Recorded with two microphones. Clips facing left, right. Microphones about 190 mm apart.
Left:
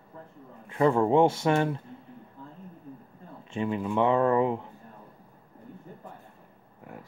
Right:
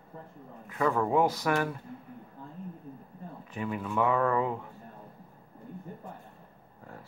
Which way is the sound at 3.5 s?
25° left (ahead or behind).